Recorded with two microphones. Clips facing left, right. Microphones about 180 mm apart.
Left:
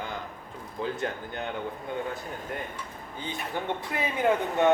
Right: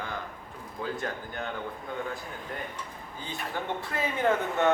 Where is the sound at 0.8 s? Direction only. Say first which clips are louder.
Left 2 dB; 20° left (ahead or behind).